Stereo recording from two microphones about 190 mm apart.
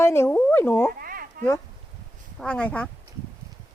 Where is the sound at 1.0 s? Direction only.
50° right (ahead or behind).